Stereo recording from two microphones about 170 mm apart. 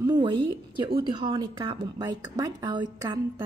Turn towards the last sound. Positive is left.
turn(degrees=-25)  # may be behind; listen again after turning